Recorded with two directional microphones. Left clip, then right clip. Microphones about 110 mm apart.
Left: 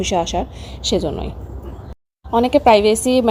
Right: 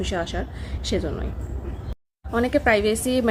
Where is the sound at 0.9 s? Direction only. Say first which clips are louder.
Left 7 dB; 35° left (ahead or behind).